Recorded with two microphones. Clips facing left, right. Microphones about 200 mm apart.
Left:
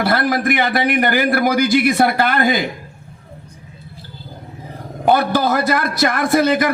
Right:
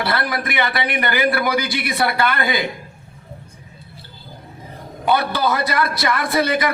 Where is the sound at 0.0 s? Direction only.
50° left (ahead or behind).